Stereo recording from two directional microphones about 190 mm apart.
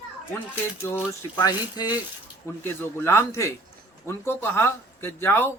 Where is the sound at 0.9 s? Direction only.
10° left (ahead or behind).